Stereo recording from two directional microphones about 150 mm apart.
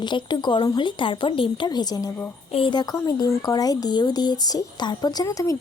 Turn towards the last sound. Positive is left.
turn(degrees=20)  # may be behind; listen again after turning